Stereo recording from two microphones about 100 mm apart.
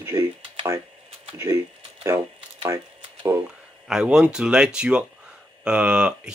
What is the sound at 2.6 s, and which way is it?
Typewriter, 30° right (ahead or behind).